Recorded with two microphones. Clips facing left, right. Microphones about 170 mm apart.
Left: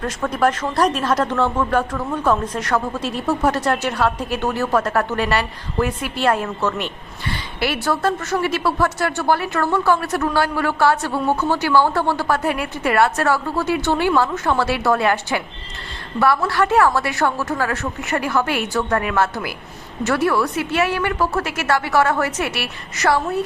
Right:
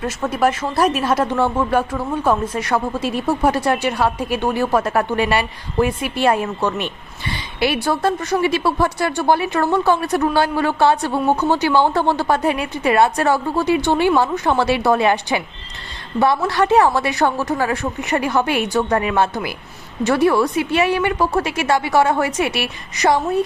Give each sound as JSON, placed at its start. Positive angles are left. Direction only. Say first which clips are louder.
{"t": 0.0, "sound": "a woman's voice", "louder": "right 1 dB", "side_deg": -10}